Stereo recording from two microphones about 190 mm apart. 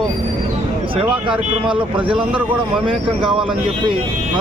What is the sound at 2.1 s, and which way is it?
A woman's voice, 5° right (ahead or behind).